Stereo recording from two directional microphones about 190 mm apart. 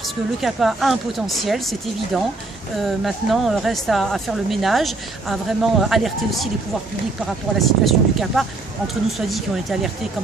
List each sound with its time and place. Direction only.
0.0 s speech: centre (ahead or behind)
7.5 s speech: centre (ahead or behind)